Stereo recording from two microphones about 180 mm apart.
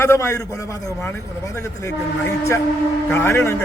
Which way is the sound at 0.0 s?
15° left (ahead or behind).